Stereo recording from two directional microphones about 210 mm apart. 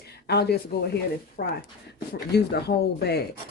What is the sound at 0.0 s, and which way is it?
Speech, 50° left (ahead or behind).